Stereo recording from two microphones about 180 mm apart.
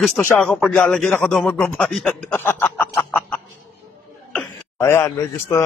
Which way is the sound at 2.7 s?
10° left (ahead or behind).